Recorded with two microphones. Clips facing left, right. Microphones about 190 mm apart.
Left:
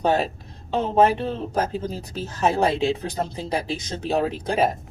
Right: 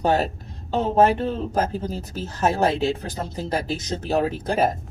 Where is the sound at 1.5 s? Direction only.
Centre (ahead or behind).